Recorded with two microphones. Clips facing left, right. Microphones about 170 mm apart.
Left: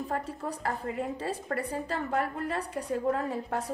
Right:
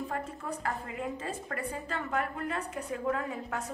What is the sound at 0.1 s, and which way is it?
A woman's voice, 35° left (ahead or behind).